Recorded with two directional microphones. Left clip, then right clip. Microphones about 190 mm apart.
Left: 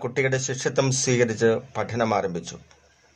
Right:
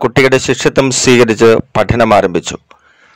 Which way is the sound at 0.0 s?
55° right (ahead or behind).